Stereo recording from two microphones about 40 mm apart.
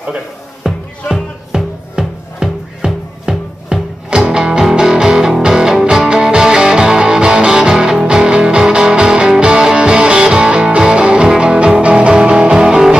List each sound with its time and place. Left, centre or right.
0.7 s music: centre